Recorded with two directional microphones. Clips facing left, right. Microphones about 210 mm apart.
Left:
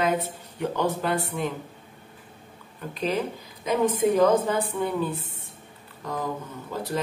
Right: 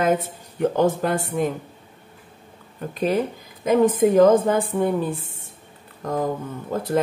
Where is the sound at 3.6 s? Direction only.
50° right (ahead or behind).